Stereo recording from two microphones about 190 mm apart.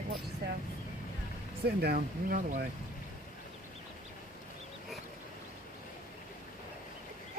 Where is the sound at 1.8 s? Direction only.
50° right (ahead or behind).